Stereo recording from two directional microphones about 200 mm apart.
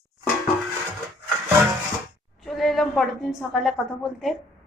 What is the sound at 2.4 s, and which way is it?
A woman's voice, centre (ahead or behind).